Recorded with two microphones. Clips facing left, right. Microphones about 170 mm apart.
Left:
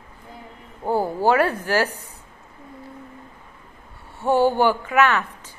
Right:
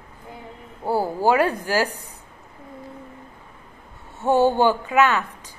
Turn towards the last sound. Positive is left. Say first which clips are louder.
# even
turn(degrees=-20)  # may be behind; listen again after turning